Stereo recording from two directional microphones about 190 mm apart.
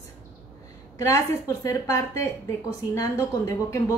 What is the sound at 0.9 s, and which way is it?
A woman's voice, 15° left (ahead or behind).